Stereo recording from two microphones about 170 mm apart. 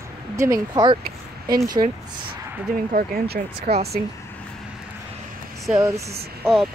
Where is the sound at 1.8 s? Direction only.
35° right (ahead or behind).